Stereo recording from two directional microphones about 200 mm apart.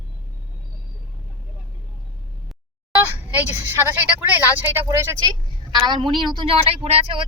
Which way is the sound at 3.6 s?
10° right (ahead or behind).